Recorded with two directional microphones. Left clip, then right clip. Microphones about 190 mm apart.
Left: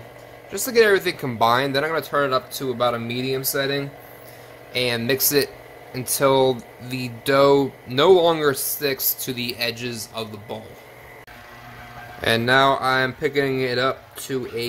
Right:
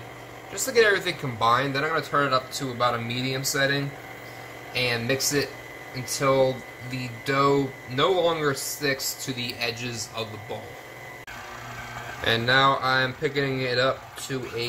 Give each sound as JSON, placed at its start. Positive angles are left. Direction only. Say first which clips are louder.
{"t": 0.5, "sound": "speech", "louder": "left 4 dB", "side_deg": 60}
{"t": 4.7, "sound": "speech", "louder": "left 3 dB", "side_deg": 60}
{"t": 12.2, "sound": "speech", "louder": "left 3 dB", "side_deg": 55}